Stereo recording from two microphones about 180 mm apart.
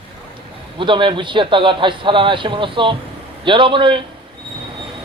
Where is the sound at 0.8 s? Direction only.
25° right (ahead or behind).